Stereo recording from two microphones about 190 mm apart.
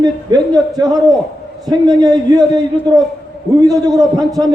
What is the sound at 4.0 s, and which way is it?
Speech, 20° right (ahead or behind).